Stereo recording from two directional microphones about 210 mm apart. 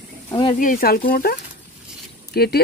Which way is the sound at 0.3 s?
25° left (ahead or behind).